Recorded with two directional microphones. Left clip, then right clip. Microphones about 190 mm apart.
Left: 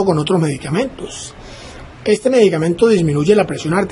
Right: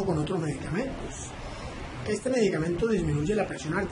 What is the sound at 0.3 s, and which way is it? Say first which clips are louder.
Speech: left 15 dB; 45° left (ahead or behind).